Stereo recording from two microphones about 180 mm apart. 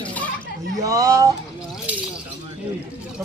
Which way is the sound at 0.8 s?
20° right (ahead or behind).